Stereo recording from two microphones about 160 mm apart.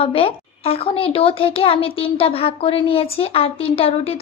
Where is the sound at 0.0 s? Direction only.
35° left (ahead or behind).